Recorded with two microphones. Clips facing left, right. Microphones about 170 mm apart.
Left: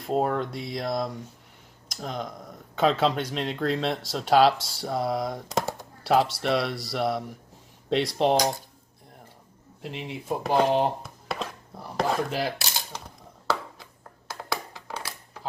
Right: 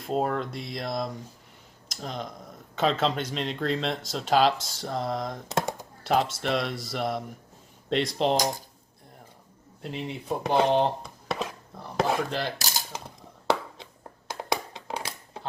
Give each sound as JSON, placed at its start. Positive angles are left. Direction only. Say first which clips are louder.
{"t": 0.0, "sound": "speech", "louder": "left 2 dB", "side_deg": 0}
{"t": 5.6, "sound": "typing", "louder": "left 2 dB", "side_deg": 0}
{"t": 6.4, "sound": "speech", "louder": "left 2 dB", "side_deg": 0}
{"t": 9.8, "sound": "speech", "louder": "right 1 dB", "side_deg": 0}
{"t": 14.3, "sound": "a sound", "louder": "right 3 dB", "side_deg": -25}